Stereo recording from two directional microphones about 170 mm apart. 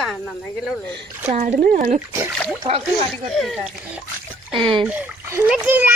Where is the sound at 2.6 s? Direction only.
35° right (ahead or behind).